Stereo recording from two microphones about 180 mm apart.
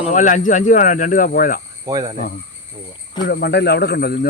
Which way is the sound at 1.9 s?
20° right (ahead or behind).